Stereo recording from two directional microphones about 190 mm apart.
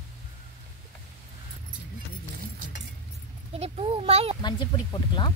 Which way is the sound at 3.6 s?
30° right (ahead or behind).